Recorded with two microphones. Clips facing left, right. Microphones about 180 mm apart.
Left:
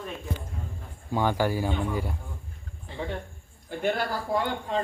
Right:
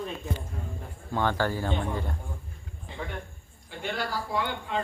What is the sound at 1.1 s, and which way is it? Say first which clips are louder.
Speech: left 2 dB; 10° left (ahead or behind).